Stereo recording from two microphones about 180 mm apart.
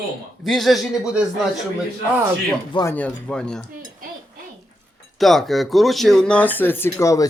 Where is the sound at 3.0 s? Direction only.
5° left (ahead or behind).